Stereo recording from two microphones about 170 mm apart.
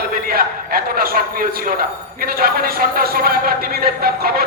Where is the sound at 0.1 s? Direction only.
60° right (ahead or behind).